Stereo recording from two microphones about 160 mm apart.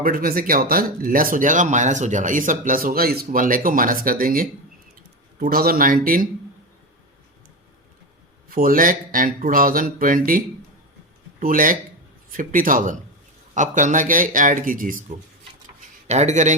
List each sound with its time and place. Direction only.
0.0 s speech: 65° right (ahead or behind)
8.4 s speech: 60° right (ahead or behind)
16.0 s a man's voice: 45° right (ahead or behind)